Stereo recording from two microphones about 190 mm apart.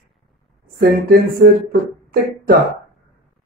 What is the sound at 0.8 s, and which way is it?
Speech, 55° right (ahead or behind).